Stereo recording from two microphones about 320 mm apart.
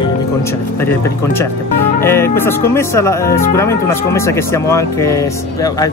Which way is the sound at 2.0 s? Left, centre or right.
Centre.